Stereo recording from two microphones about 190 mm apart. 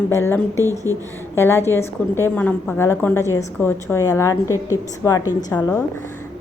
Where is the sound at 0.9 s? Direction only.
15° right (ahead or behind).